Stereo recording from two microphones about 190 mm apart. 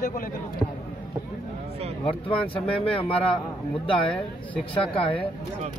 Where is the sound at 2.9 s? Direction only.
30° left (ahead or behind).